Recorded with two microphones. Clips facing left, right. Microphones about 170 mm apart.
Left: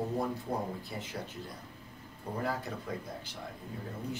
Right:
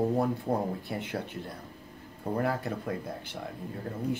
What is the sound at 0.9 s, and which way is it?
Speech, 60° right (ahead or behind).